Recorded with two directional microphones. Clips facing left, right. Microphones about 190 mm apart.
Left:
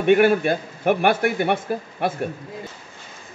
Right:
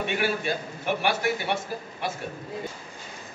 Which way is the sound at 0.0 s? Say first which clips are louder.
Left 11 dB; 55° left (ahead or behind).